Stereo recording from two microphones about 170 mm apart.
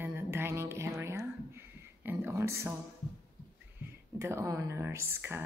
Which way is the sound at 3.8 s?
15° right (ahead or behind).